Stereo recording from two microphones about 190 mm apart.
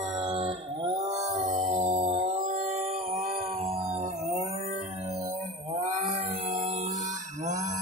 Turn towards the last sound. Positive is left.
turn(degrees=-35)  # may be behind; listen again after turning